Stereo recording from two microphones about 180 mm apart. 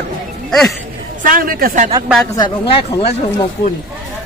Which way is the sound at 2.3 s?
25° left (ahead or behind).